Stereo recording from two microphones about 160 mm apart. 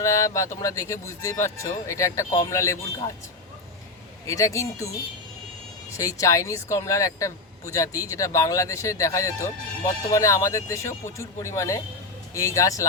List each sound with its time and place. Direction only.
0.0 s speech: 20° left (ahead or behind)
4.3 s speech: 20° left (ahead or behind)
6.0 s speech: 20° left (ahead or behind)